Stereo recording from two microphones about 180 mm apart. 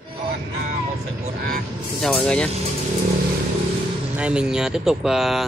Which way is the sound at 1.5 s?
Centre (ahead or behind).